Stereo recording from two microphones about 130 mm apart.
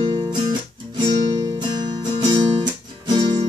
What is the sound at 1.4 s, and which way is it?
Music, 35° right (ahead or behind).